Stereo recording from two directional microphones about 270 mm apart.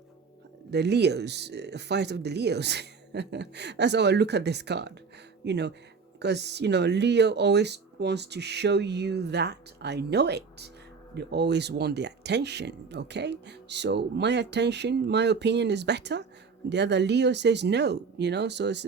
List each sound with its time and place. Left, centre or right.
0.7 s speech: right